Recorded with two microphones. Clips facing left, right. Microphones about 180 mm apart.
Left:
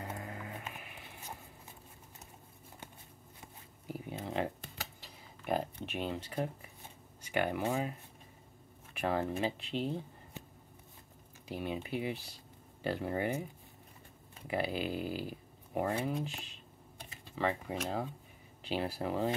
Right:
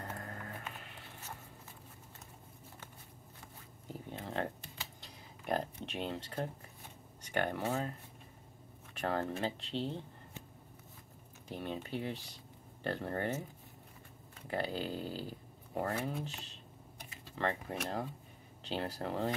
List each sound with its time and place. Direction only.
0.0 s a sound: 10° left (ahead or behind)
3.8 s a sound: 10° left (ahead or behind)
5.9 s speech: 10° left (ahead or behind)
8.9 s speech: 10° left (ahead or behind)
11.4 s speech: 10° left (ahead or behind)
14.5 s speech: 10° left (ahead or behind)